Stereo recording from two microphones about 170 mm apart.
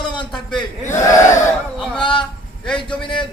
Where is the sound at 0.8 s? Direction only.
45° left (ahead or behind).